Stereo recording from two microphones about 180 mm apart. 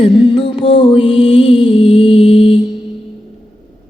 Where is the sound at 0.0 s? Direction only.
30° left (ahead or behind).